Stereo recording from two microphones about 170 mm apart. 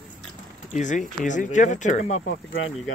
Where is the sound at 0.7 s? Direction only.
45° left (ahead or behind).